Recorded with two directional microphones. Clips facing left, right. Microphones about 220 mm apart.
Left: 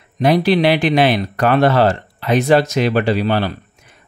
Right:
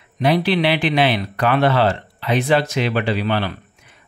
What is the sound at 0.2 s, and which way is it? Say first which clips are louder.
Speech: left 4 dB; 45° left (ahead or behind).